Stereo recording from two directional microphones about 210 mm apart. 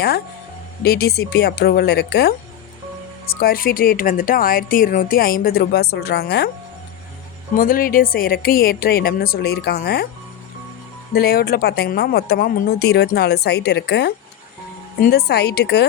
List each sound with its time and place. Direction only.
0.9 s a woman's voice: 45° left (ahead or behind)
3.4 s a woman's voice: 45° left (ahead or behind)
7.5 s a woman's voice: 40° left (ahead or behind)
11.1 s a woman's voice: 45° left (ahead or behind)
15.1 s a woman's voice: 50° left (ahead or behind)